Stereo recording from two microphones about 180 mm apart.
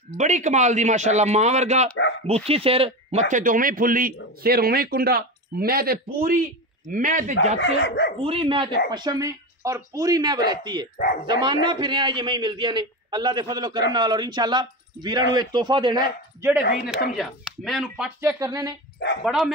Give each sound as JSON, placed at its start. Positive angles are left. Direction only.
{"t": 0.2, "sound": "speech", "side_deg": -40}
{"t": 7.5, "sound": "speech", "side_deg": 75}
{"t": 8.2, "sound": "a man's voice", "side_deg": -30}
{"t": 16.3, "sound": "speech", "side_deg": -15}
{"t": 17.1, "sound": "speech", "side_deg": 0}
{"t": 18.2, "sound": "a man's voice", "side_deg": -20}
{"t": 19.2, "sound": "speech", "side_deg": 0}